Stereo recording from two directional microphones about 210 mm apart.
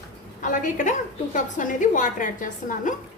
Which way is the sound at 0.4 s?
40° left (ahead or behind).